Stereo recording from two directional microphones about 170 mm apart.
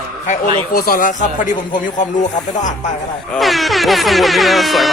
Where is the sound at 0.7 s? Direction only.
55° left (ahead or behind).